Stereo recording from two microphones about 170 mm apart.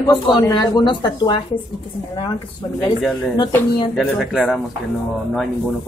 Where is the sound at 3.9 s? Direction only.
Centre (ahead or behind).